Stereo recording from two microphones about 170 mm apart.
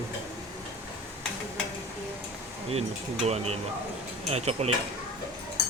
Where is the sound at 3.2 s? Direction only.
40° right (ahead or behind).